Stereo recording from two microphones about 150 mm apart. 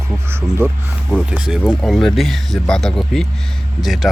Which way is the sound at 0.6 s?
10° left (ahead or behind).